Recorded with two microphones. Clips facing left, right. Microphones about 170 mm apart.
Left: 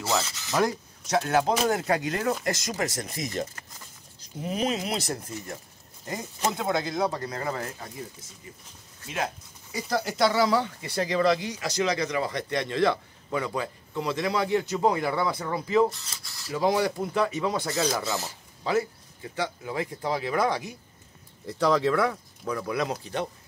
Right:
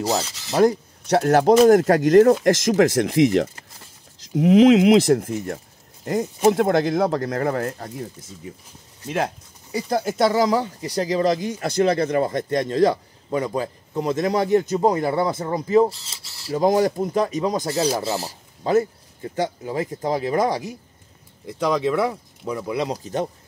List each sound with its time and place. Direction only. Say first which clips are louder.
0.0 s speech: right 5 dB; 35° right (ahead or behind)
2.4 s speech: right 12 dB; 85° right; by 7.9 s 60° right (ahead or behind)
9.9 s speech: right 4 dB; 50° right (ahead or behind); by 16.5 s 30° right (ahead or behind)
16.5 s speech: right 6 dB; 45° right (ahead or behind)
18.7 s speech: right 7 dB; 45° right (ahead or behind)
21.5 s speech: right 2 dB; 15° right (ahead or behind)
22.9 s speech: right 6 dB; 40° right (ahead or behind)